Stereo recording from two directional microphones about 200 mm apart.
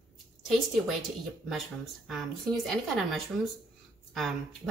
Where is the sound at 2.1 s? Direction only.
Centre (ahead or behind).